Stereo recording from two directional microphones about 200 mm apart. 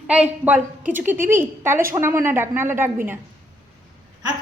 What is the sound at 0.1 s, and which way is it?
A woman's voice, 5° right (ahead or behind).